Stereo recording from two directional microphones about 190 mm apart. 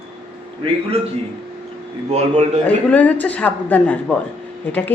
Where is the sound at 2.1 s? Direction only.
35° right (ahead or behind).